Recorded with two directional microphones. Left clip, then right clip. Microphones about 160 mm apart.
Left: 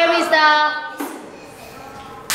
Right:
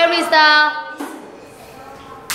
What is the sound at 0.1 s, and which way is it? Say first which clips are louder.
Child singing: right 2 dB; 20° right (ahead or behind).